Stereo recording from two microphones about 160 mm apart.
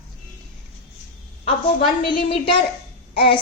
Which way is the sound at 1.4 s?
35° left (ahead or behind).